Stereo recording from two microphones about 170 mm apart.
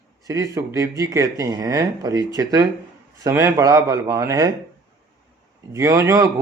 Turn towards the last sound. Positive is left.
turn(degrees=-20)  # may be behind; listen again after turning